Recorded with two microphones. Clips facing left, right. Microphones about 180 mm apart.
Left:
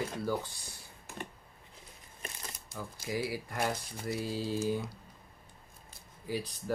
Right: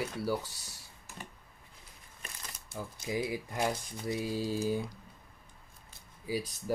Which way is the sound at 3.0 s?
20° right (ahead or behind).